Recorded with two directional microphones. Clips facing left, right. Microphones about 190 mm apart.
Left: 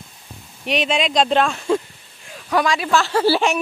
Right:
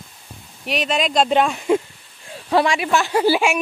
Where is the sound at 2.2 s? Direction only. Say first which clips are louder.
Right 2 dB; 30° right (ahead or behind); by 3.6 s 15° right (ahead or behind).